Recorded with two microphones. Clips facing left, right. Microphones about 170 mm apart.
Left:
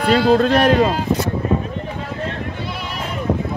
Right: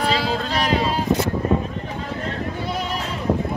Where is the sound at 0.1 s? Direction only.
55° left (ahead or behind).